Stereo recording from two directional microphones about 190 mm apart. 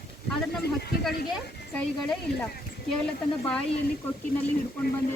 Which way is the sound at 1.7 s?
5° left (ahead or behind).